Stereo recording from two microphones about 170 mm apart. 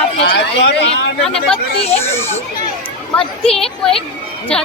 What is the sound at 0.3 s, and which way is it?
Speech, 85° left.